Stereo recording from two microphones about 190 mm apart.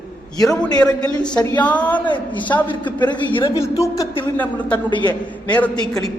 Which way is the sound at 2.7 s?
25° left (ahead or behind).